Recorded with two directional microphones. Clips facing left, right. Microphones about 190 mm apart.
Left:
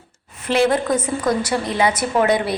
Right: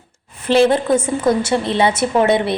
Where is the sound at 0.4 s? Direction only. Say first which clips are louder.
Right 4 dB; 30° right (ahead or behind).